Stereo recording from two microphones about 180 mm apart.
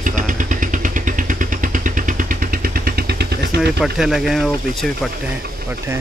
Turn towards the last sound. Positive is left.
turn(degrees=0)  # may be behind; listen again after turning